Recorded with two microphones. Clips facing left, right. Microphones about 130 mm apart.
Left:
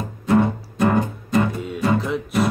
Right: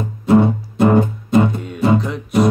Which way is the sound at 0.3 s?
25° right (ahead or behind).